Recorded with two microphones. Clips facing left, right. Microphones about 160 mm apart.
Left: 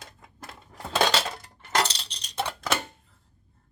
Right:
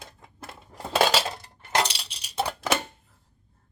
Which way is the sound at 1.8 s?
10° right (ahead or behind).